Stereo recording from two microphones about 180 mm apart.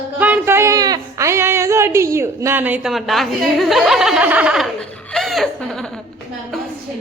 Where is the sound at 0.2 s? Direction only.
10° right (ahead or behind).